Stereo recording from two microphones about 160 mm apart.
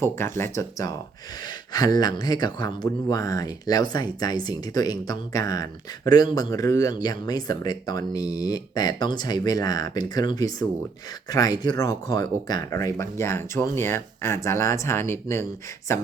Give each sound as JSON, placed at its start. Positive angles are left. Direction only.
{"t": 0.0, "sound": "speech", "side_deg": 15}